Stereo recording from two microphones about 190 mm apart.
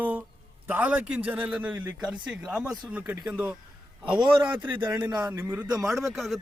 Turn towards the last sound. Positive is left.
turn(degrees=0)  # may be behind; listen again after turning